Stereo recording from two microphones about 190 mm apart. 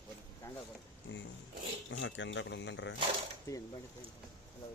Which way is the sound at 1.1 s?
75° left (ahead or behind).